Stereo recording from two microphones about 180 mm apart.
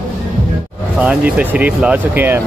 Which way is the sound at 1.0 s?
5° right (ahead or behind).